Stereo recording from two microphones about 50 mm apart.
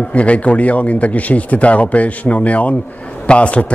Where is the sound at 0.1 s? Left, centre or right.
Left.